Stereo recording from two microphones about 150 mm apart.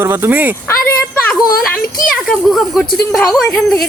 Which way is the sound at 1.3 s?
5° left (ahead or behind).